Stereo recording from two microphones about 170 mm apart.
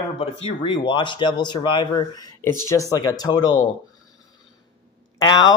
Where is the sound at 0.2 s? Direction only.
35° left (ahead or behind).